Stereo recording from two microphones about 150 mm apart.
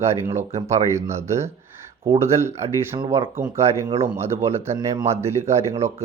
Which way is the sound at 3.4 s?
20° right (ahead or behind).